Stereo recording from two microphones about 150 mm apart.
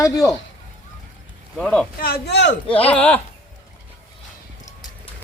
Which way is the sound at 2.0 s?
85° left.